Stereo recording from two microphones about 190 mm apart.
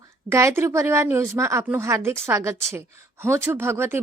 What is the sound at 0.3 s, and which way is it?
A woman's voice, 15° right (ahead or behind).